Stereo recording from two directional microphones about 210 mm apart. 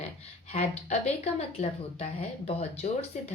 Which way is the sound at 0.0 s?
30° left (ahead or behind).